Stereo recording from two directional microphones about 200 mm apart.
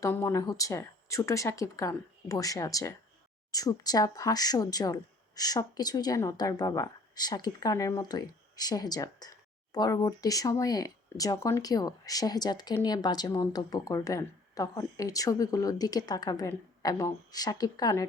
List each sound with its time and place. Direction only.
0.0 s speech: 15° left (ahead or behind)